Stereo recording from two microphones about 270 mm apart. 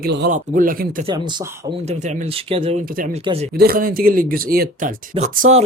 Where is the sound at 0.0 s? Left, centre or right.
Right.